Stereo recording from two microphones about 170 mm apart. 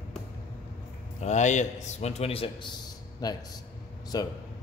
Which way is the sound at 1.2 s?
45° left (ahead or behind).